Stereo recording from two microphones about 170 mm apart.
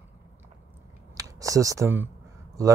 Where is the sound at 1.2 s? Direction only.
20° right (ahead or behind).